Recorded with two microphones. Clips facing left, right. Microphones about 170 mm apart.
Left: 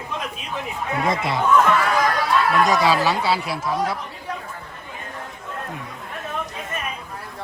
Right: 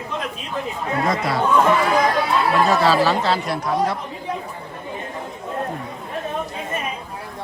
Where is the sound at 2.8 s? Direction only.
15° left (ahead or behind).